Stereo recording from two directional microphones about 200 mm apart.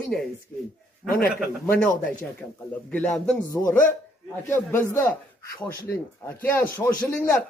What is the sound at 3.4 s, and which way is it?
Speech, 15° left (ahead or behind).